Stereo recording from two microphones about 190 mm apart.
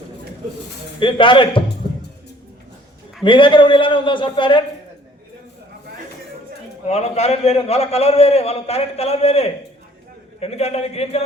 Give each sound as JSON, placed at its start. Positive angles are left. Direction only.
{"t": 0.9, "sound": "a man's voice", "side_deg": 25}
{"t": 3.2, "sound": "a man's voice", "side_deg": 25}
{"t": 6.8, "sound": "a man's voice", "side_deg": 35}